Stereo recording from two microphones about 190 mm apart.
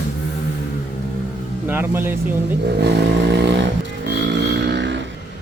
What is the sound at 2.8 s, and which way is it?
Vehicle, 60° right (ahead or behind).